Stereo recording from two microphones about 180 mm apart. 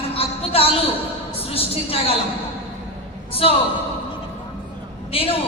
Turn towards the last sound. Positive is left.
turn(degrees=30)  # may be behind; listen again after turning